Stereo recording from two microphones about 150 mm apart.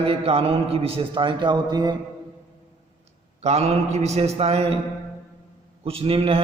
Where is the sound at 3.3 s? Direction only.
45° right (ahead or behind).